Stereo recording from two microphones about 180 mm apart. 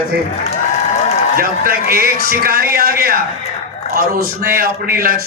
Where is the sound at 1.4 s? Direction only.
55° right (ahead or behind).